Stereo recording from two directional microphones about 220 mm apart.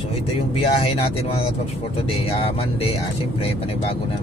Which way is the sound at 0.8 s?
25° left (ahead or behind).